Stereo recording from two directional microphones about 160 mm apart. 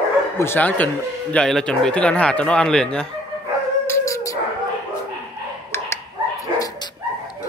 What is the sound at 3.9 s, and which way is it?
Dog, 20° left (ahead or behind).